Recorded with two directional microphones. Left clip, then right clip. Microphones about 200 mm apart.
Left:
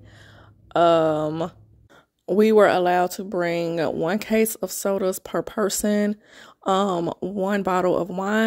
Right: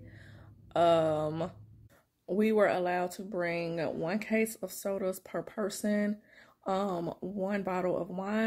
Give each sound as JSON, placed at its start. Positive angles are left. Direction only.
{"t": 0.7, "sound": "speech", "side_deg": 45}